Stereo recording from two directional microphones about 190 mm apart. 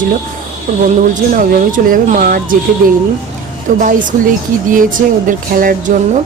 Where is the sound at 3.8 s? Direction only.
45° right (ahead or behind).